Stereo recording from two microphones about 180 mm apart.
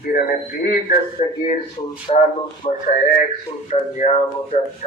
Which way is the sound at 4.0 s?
35° left (ahead or behind).